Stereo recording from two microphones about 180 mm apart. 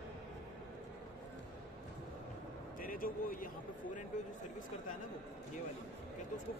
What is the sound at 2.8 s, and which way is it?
Speech, 50° left (ahead or behind).